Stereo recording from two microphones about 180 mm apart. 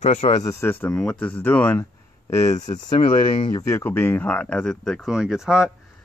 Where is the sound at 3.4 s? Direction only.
20° left (ahead or behind); by 5.7 s 5° right (ahead or behind).